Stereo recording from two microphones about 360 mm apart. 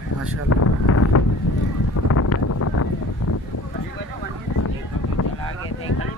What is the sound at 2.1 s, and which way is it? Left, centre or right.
Wind noise, left.